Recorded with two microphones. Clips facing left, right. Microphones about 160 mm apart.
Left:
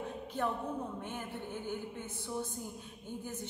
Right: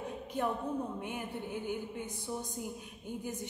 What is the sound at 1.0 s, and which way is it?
A woman's voice, 15° right (ahead or behind).